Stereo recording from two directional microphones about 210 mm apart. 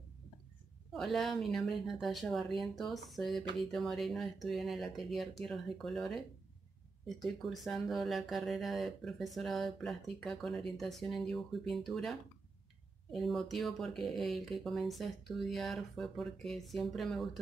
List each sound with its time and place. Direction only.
0.9 s speech: centre (ahead or behind)